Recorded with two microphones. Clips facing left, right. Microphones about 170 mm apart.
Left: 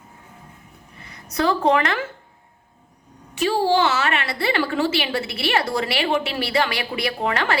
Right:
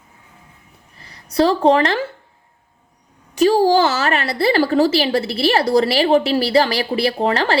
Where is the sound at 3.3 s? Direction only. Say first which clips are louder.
Right 6 dB; 40° right (ahead or behind).